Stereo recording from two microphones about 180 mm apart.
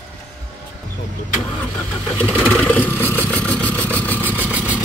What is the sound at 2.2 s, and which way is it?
Vehicle, 10° left (ahead or behind).